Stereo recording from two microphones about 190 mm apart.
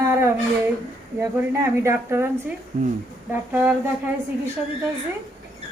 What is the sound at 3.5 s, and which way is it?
Speech, 10° right (ahead or behind).